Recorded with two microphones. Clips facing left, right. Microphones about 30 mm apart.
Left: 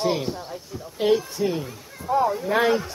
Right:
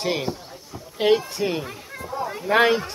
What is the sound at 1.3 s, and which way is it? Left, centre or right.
Speech, right.